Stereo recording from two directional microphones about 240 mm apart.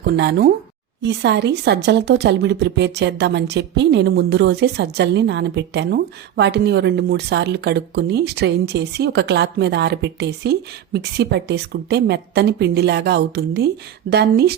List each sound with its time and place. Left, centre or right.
0.2 s a woman's voice: right